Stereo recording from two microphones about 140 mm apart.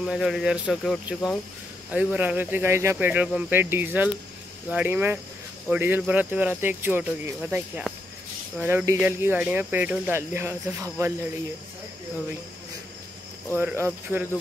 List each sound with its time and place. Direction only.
0.0 s speech: centre (ahead or behind)
13.6 s speech: 15° right (ahead or behind)